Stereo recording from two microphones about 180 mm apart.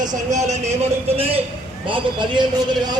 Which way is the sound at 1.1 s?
30° right (ahead or behind).